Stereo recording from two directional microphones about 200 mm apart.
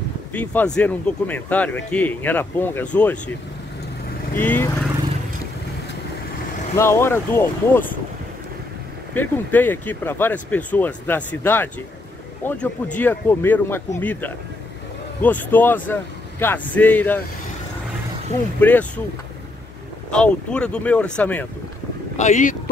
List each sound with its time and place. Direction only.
0.3 s speech: 10° left (ahead or behind)
4.4 s speech: 10° left (ahead or behind)
6.7 s speech: 10° left (ahead or behind)
9.1 s speech: 10° left (ahead or behind)
18.6 s speech: 10° left (ahead or behind)
20.1 s speech: 5° left (ahead or behind)
22.1 s speech: 35° left (ahead or behind)